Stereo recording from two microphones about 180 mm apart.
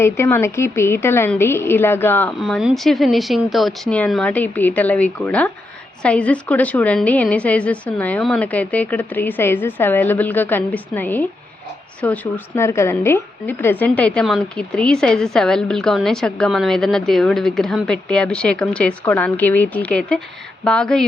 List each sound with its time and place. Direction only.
0.0 s a woman's voice: 15° left (ahead or behind)
2.4 s a woman's voice: centre (ahead or behind)